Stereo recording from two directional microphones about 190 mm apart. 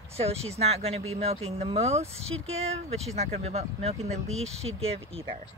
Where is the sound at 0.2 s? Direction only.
35° right (ahead or behind).